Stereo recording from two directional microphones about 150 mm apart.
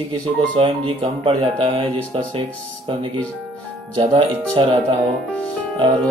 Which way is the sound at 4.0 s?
35° right (ahead or behind).